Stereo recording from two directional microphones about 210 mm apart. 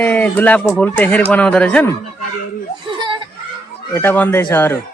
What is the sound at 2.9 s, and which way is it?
Children playing, 20° right (ahead or behind).